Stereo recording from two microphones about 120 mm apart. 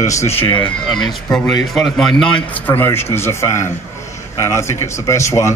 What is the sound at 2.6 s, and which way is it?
A man's voice, 15° left (ahead or behind).